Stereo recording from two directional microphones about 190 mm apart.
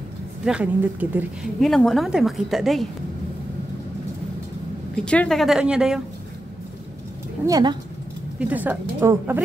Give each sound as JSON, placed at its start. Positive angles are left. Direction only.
{"t": 0.5, "sound": "speech", "side_deg": -5}
{"t": 4.9, "sound": "speech", "side_deg": 5}
{"t": 7.4, "sound": "speech", "side_deg": -20}
{"t": 8.4, "sound": "a woman's voice", "side_deg": -10}